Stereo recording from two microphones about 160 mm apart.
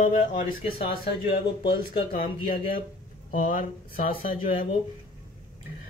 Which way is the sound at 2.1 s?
60° left (ahead or behind).